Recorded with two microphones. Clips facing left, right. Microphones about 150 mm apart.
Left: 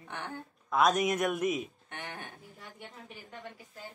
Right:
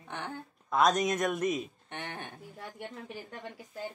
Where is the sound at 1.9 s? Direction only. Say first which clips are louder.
Right 2 dB; 25° right (ahead or behind).